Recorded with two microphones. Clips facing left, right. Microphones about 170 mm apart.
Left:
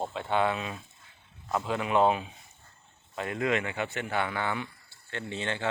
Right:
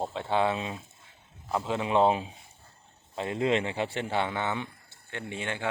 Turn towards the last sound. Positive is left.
turn(degrees=-10)  # may be behind; listen again after turning